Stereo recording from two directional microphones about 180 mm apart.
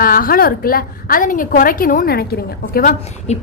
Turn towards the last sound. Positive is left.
turn(degrees=40)  # may be behind; listen again after turning